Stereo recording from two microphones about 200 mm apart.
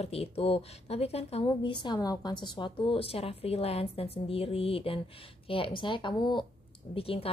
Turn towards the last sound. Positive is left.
turn(degrees=30)  # may be behind; listen again after turning